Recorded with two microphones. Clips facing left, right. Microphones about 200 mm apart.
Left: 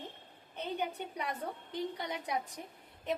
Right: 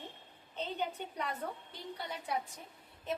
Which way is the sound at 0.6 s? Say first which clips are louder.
Left 2 dB; 15° left (ahead or behind).